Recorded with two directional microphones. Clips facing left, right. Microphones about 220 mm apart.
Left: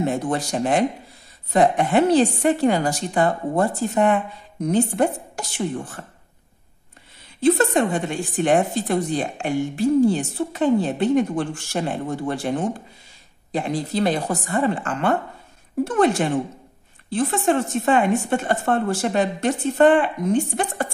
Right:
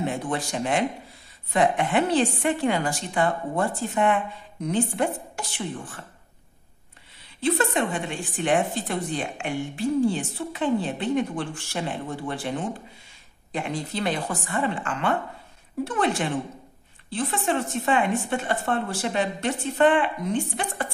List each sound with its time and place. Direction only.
0.0 s a woman's voice: 40° left (ahead or behind)
7.3 s a woman's voice: 45° left (ahead or behind)